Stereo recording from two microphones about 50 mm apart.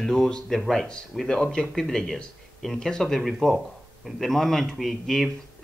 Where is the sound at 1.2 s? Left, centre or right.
Centre.